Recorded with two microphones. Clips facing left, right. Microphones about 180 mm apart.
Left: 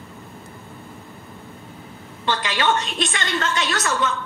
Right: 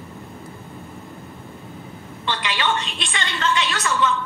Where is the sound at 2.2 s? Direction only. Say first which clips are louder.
Left 3 dB; 45° left (ahead or behind).